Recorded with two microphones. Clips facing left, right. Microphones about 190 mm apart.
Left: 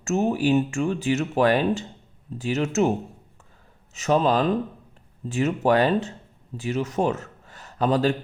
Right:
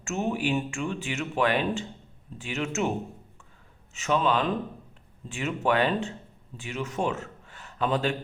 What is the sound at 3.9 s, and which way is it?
Speech, 40° left (ahead or behind).